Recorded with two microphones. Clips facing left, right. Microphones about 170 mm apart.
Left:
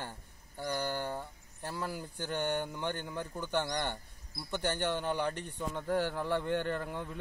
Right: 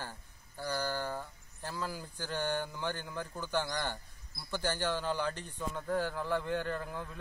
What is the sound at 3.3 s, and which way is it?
A man's voice, 20° left (ahead or behind).